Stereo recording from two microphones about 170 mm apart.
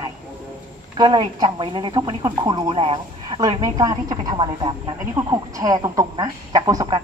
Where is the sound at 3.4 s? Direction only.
20° right (ahead or behind).